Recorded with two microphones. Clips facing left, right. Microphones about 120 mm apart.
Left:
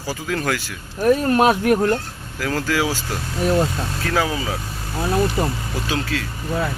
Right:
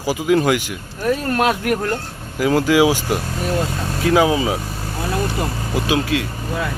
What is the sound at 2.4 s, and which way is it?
Speech, 15° right (ahead or behind).